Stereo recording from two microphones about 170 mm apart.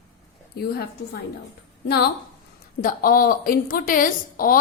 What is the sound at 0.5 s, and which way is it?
Speech, 65° left (ahead or behind).